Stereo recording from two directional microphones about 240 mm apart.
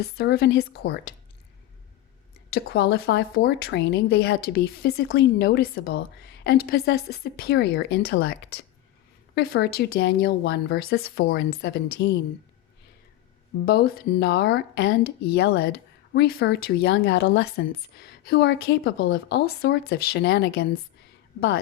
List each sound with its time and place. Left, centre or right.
0.0 s a woman's voice: left
2.5 s a woman's voice: left
13.7 s a woman's voice: left
15.0 s speech: left
15.4 s a woman's voice: left